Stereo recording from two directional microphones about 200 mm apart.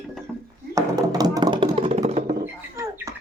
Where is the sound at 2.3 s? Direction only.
15° right (ahead or behind).